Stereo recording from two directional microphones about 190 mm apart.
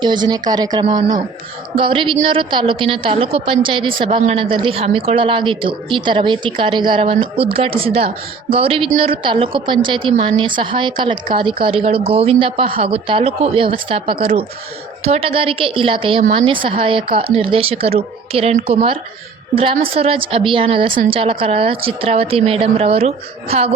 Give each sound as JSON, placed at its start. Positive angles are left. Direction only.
{"t": 0.0, "sound": "a woman's voice", "side_deg": -25}